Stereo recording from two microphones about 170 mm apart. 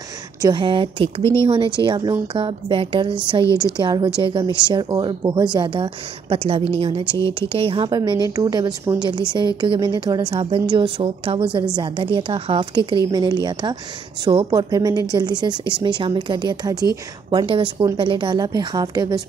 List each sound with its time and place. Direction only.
0.4 s a woman's voice: 25° right (ahead or behind)
3.4 s a woman's voice: 20° left (ahead or behind)
3.7 s a woman's voice: 25° right (ahead or behind)